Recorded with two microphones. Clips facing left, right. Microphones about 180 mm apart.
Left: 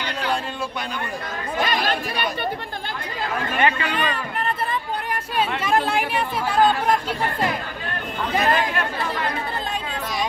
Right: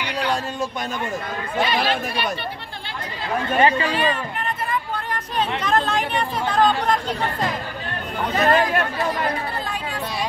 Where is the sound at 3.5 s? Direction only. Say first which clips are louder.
Right 4 dB; 35° right (ahead or behind).